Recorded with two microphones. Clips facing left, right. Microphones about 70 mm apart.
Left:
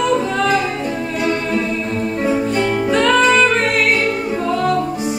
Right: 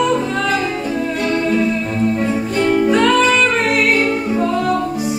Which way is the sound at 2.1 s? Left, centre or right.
Centre.